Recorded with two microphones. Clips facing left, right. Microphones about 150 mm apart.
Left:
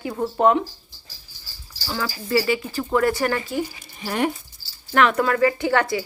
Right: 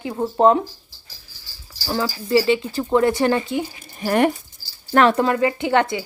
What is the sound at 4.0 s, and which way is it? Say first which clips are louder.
Speech: right 6 dB; 55° right (ahead or behind).